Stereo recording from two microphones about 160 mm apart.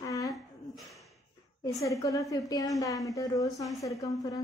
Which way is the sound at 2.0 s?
20° left (ahead or behind).